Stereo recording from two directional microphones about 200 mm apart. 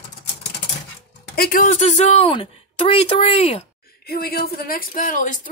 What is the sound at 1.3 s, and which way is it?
A woman's voice, 50° left (ahead or behind).